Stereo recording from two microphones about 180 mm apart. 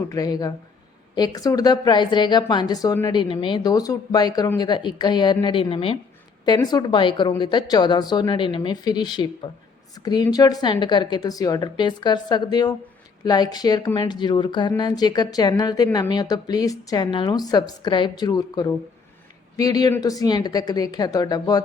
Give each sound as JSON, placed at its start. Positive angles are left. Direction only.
{"t": 0.1, "sound": "a woman's voice", "side_deg": 20}